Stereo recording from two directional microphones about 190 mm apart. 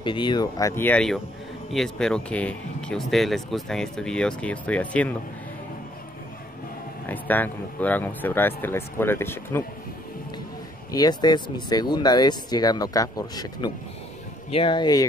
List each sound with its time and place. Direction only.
0.0 s speech: 25° left (ahead or behind); by 5.1 s 5° left (ahead or behind)
7.1 s speech: 10° left (ahead or behind)
10.9 s speech: 20° left (ahead or behind)